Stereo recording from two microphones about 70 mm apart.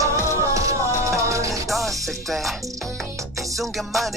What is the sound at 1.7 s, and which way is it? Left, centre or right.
Music, centre.